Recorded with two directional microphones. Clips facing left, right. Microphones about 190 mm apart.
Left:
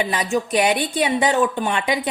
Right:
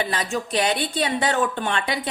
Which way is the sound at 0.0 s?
15° left (ahead or behind).